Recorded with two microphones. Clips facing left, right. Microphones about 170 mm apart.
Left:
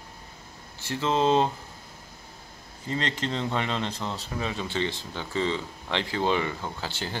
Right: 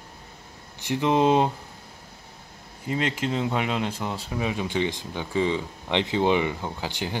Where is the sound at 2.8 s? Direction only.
10° right (ahead or behind).